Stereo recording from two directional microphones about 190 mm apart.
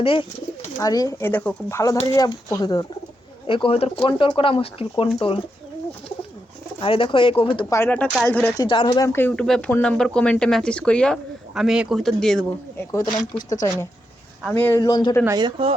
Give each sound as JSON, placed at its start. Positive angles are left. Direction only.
{"t": 0.0, "sound": "speech", "side_deg": 30}
{"t": 6.7, "sound": "speech", "side_deg": 30}
{"t": 7.8, "sound": "speech", "side_deg": 10}
{"t": 8.6, "sound": "speech", "side_deg": 25}
{"t": 9.1, "sound": "speech", "side_deg": 10}
{"t": 12.9, "sound": "speech", "side_deg": 15}
{"t": 15.2, "sound": "speech", "side_deg": -20}